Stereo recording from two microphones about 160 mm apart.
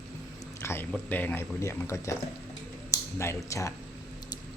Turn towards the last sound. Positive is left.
turn(degrees=20)  # may be behind; listen again after turning